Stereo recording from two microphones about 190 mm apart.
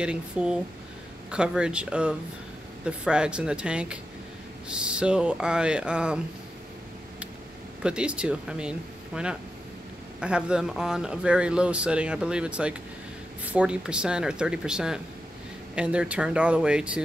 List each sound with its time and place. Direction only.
0.0 s speech: 5° right (ahead or behind)
7.8 s speech: 5° right (ahead or behind)